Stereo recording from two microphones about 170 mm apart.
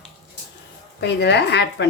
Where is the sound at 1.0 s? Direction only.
85° left.